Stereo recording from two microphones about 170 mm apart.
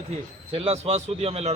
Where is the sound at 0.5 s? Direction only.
35° right (ahead or behind).